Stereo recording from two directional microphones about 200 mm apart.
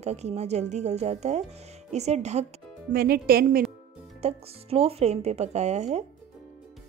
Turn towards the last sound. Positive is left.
turn(degrees=-35)  # may be behind; listen again after turning